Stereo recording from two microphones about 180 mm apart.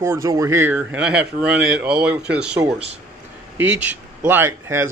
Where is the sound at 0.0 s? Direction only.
15° right (ahead or behind).